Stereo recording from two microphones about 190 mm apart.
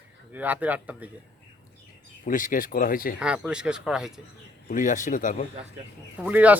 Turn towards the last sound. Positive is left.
turn(degrees=-10)  # may be behind; listen again after turning